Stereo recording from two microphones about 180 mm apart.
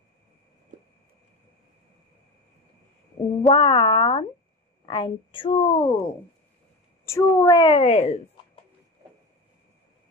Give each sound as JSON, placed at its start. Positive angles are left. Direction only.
{"t": 3.4, "sound": "a woman's voice", "side_deg": 25}
{"t": 7.1, "sound": "a woman's voice", "side_deg": 20}